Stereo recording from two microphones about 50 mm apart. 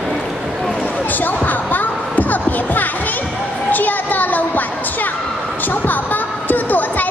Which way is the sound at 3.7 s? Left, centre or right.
Left.